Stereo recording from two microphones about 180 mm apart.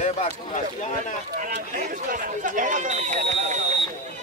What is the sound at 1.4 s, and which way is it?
Speech, 50° right (ahead or behind).